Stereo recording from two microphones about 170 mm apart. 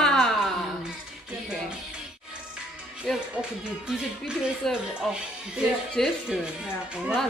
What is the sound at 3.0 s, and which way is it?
Speech, 5° right (ahead or behind).